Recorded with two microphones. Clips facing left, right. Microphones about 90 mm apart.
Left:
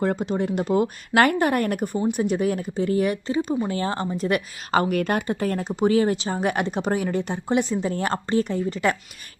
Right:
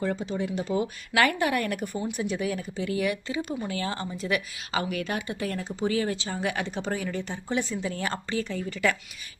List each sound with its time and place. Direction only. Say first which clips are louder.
0.0 s speech: left 5 dB; 55° left (ahead or behind); by 4.3 s 35° left (ahead or behind)
4.3 s speech: left 5 dB; 45° left (ahead or behind)
7.7 s speech: left 6 dB; 40° left (ahead or behind)